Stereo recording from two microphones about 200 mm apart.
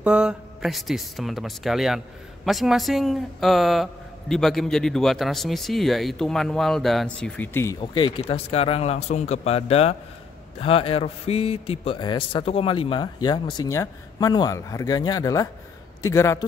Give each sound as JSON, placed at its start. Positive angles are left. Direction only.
{"t": 0.0, "sound": "a man's voice", "side_deg": -5}
{"t": 7.8, "sound": "a man's voice", "side_deg": 25}